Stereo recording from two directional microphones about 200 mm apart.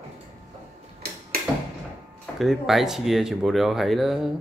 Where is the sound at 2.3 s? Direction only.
Centre (ahead or behind).